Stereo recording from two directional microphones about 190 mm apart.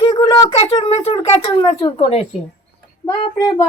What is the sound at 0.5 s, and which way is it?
A child's voice, 30° left (ahead or behind).